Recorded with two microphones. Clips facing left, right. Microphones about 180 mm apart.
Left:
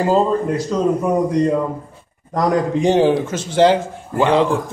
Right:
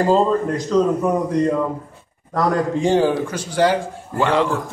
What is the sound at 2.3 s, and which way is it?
A man's voice, 20° left (ahead or behind).